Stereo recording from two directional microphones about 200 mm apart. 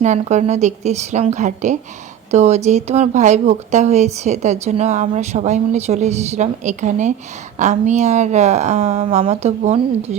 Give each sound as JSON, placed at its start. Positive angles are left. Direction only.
{"t": 0.0, "sound": "speech", "side_deg": -35}